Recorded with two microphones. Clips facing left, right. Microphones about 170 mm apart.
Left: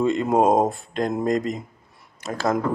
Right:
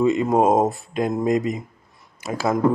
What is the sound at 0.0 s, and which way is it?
Speech, 5° right (ahead or behind).